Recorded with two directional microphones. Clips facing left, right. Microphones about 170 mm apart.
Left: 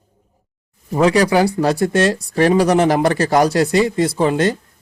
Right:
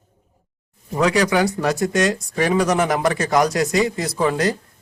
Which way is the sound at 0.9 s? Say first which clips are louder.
Left 4 dB; 30° left (ahead or behind).